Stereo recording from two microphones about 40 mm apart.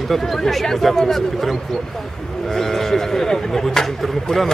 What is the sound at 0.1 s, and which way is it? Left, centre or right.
Speech, centre.